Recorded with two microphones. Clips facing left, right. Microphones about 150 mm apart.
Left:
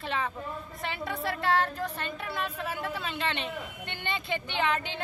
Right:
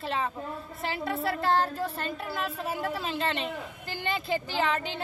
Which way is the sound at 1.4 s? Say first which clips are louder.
Right 1 dB; 35° right (ahead or behind).